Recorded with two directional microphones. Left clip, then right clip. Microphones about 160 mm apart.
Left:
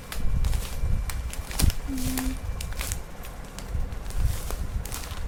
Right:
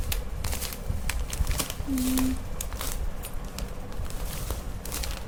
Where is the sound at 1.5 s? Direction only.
5° right (ahead or behind).